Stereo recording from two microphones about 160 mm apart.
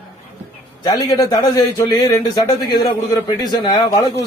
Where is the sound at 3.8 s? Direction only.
25° left (ahead or behind).